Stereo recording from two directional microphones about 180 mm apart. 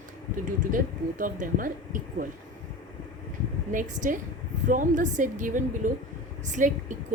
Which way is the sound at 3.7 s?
45° right (ahead or behind).